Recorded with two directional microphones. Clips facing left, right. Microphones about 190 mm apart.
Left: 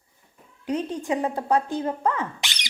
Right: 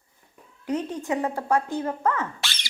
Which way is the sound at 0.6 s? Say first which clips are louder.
Left 1 dB; 10° left (ahead or behind).